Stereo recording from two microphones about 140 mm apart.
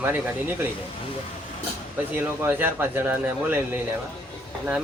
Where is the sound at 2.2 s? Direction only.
15° right (ahead or behind).